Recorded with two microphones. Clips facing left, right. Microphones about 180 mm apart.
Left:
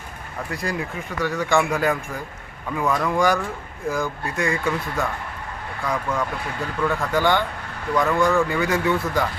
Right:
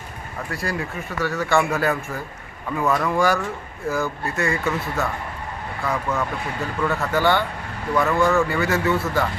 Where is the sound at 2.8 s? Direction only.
5° right (ahead or behind).